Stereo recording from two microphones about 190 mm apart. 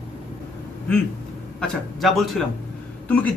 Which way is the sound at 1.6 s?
Centre (ahead or behind).